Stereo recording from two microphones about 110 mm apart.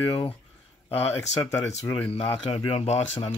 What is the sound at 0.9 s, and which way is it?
Speech, 20° left (ahead or behind).